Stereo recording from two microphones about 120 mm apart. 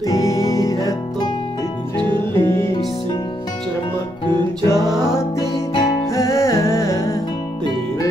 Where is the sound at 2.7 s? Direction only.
45° left (ahead or behind).